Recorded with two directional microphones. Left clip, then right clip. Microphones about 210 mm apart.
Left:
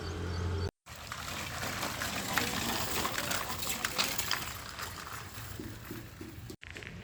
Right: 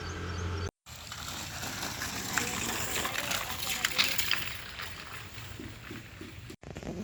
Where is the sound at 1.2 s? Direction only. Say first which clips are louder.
Left 1 dB; 35° left (ahead or behind).